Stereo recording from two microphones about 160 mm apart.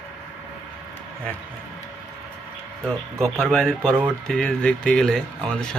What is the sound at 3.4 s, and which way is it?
Speech, 5° left (ahead or behind).